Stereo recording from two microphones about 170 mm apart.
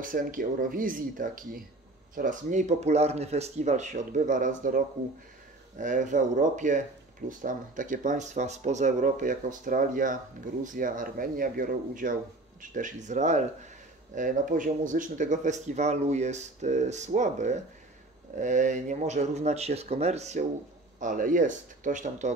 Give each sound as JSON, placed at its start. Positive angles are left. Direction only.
{"t": 0.0, "sound": "speech", "side_deg": -55}